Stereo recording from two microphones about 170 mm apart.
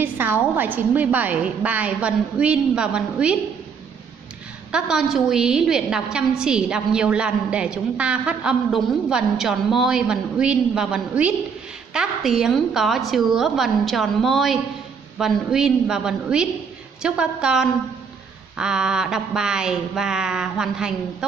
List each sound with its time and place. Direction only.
0.0 s a woman's voice: 10° right (ahead or behind)
4.7 s a woman's voice: 5° right (ahead or behind)